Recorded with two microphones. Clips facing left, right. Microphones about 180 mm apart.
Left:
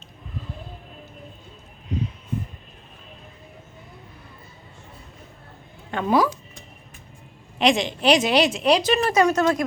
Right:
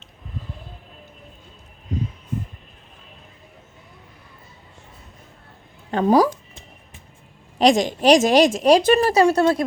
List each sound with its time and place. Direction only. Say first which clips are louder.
5.9 s speech: right 4 dB; 40° right (ahead or behind)
7.6 s speech: right 4 dB; 40° right (ahead or behind)
9.0 s speech: right 3 dB; 35° right (ahead or behind)